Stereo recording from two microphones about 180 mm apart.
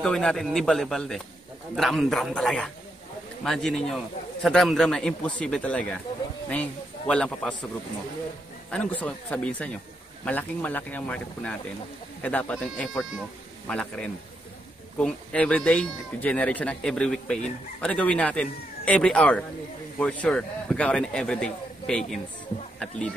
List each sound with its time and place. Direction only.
0.0 s speech: 5° left (ahead or behind)
8.6 s speech: 5° left (ahead or behind)